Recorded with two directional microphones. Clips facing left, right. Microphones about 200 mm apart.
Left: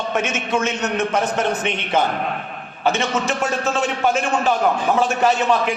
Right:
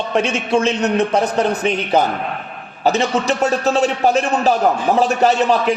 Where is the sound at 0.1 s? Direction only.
35° right (ahead or behind).